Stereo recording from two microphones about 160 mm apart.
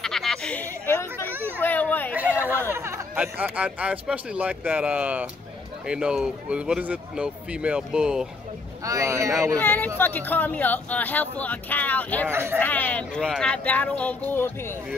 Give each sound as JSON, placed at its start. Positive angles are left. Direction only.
{"t": 0.0, "sound": "a sound", "side_deg": 0}
{"t": 1.2, "sound": "a sound", "side_deg": -15}
{"t": 1.6, "sound": "children playing", "side_deg": 10}
{"t": 2.1, "sound": "speech", "side_deg": -10}
{"t": 8.8, "sound": "speech", "side_deg": -20}
{"t": 9.6, "sound": "speech", "side_deg": 10}
{"t": 12.3, "sound": "speech", "side_deg": -15}
{"t": 12.5, "sound": "speech", "side_deg": 10}